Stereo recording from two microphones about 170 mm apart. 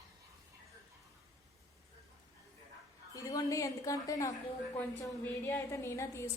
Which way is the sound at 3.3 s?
20° left (ahead or behind).